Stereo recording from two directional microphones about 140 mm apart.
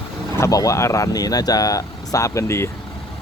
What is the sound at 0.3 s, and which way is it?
Speech, 20° left (ahead or behind).